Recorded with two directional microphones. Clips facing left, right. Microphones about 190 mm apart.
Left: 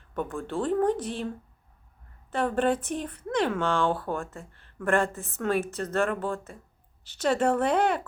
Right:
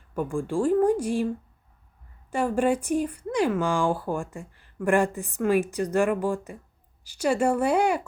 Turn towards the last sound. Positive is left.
turn(degrees=-10)  # may be behind; listen again after turning